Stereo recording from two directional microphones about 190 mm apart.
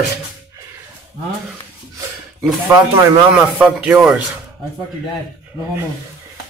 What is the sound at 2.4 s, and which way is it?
A man's voice, centre (ahead or behind).